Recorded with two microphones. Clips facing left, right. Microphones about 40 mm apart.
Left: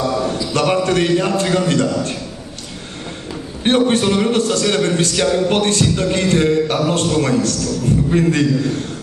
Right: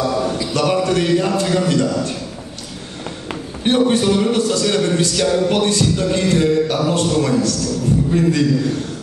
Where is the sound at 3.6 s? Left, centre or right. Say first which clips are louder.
Even; left.